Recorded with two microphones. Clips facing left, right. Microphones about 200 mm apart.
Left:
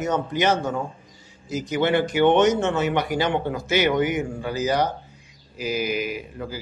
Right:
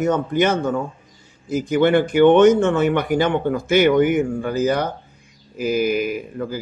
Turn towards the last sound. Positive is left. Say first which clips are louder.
# right 6 dB
turn(degrees=-50)  # may be behind; listen again after turning